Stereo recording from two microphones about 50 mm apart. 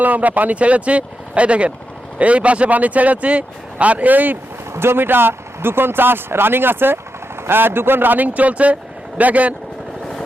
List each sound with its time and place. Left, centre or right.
0.0 s speech: right
4.7 s speech: right